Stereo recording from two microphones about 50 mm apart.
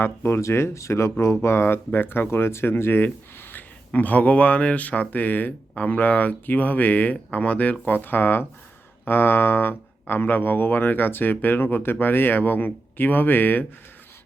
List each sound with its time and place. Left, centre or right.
0.0 s speech: left